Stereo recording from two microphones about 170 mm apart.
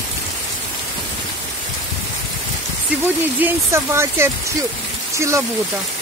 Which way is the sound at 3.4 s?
15° right (ahead or behind).